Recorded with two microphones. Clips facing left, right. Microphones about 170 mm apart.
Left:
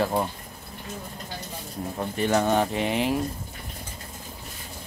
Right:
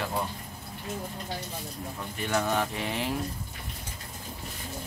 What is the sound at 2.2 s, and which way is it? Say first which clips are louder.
Speech: left 5 dB; 35° left (ahead or behind).